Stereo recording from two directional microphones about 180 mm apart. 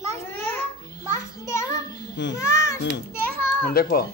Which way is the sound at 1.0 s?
15° left (ahead or behind).